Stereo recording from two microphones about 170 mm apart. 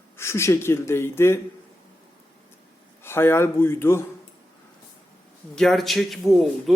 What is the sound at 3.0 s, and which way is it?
Speech, 15° left (ahead or behind).